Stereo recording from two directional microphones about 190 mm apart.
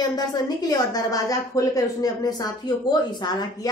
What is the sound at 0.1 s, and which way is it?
A woman's voice, 20° left (ahead or behind).